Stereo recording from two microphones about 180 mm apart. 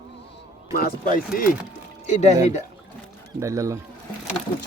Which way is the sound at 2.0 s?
40° left (ahead or behind).